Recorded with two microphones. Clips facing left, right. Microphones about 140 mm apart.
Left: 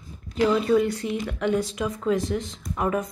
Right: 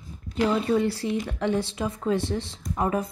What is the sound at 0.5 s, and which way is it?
Speech, 30° right (ahead or behind).